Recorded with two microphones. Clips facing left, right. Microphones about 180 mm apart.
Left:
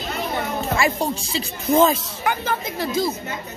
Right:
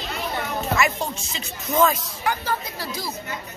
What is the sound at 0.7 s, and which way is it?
Speech, 30° left (ahead or behind).